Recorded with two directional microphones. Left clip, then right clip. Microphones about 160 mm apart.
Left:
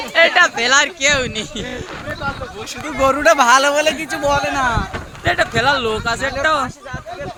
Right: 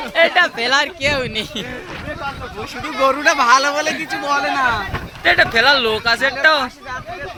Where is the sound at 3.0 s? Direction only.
90° left.